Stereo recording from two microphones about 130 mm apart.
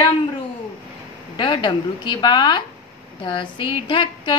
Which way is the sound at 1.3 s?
35° left (ahead or behind).